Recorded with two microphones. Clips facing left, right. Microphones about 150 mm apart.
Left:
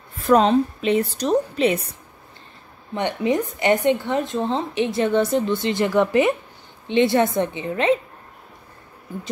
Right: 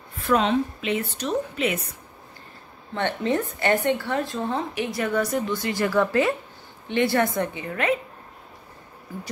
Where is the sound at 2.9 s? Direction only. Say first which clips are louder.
Left 3 dB; 15° left (ahead or behind).